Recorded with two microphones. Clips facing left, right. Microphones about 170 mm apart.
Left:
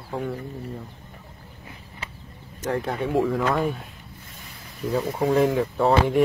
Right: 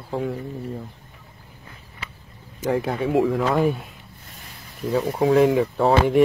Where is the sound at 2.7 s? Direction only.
Centre (ahead or behind).